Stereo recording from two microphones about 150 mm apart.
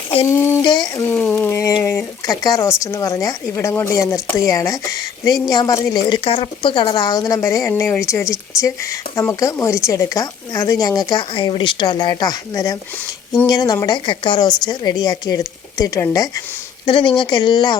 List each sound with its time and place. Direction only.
0.3 s speech: 15° left (ahead or behind)
0.7 s speech: 30° left (ahead or behind)
1.0 s speech: 10° left (ahead or behind); by 17.7 s 30° left (ahead or behind)